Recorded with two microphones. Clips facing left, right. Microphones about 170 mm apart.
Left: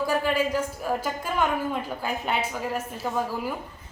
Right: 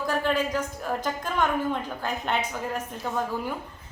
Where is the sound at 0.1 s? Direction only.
10° left (ahead or behind).